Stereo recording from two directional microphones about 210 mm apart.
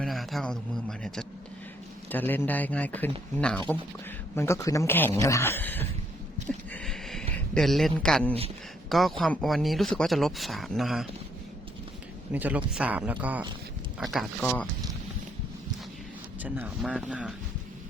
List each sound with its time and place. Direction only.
0.0 s a sound: centre (ahead or behind)
2.1 s speech: 10° left (ahead or behind)
6.8 s a sound: centre (ahead or behind)
7.5 s speech: centre (ahead or behind)
12.3 s speech: 10° right (ahead or behind)
16.4 s speech: 5° right (ahead or behind)